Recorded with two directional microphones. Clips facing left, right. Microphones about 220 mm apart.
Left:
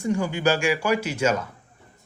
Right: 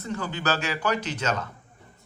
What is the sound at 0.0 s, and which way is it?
Speech, 15° left (ahead or behind).